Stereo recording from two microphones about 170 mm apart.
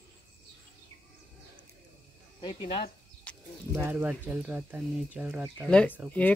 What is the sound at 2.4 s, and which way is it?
Speech, 25° left (ahead or behind).